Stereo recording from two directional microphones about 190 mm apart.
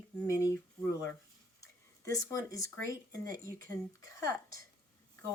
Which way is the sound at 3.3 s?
45° right (ahead or behind).